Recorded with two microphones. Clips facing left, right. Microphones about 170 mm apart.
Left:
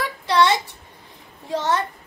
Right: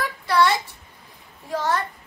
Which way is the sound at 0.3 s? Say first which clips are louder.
Left 1 dB; 20° left (ahead or behind).